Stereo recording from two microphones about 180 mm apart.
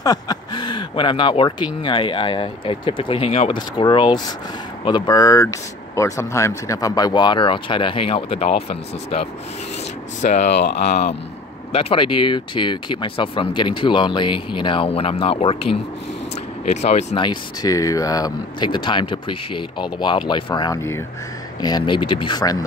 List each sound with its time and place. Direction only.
0.0 s speech: 20° left (ahead or behind)
10.2 s speech: 40° left (ahead or behind)
10.6 s speech: 65° left (ahead or behind)
11.7 s speech: 30° left (ahead or behind)
17.1 s speech: 25° left (ahead or behind)